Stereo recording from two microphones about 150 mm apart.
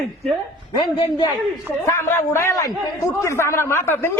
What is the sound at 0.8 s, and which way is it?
Speech, 25° left (ahead or behind).